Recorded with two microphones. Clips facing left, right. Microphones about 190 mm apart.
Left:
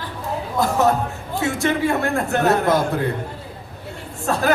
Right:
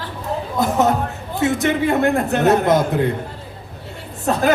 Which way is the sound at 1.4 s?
20° right (ahead or behind).